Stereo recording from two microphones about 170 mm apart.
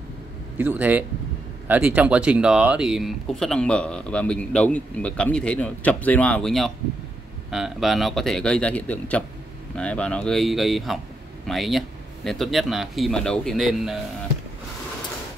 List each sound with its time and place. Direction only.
0.6 s speech: 10° right (ahead or behind)